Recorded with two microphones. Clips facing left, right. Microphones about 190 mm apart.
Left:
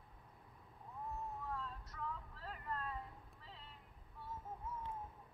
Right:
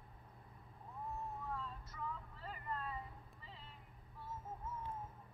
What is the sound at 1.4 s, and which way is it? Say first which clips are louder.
Vehicle: even; centre (ahead or behind).